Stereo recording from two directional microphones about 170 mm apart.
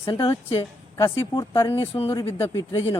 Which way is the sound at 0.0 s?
30° left (ahead or behind).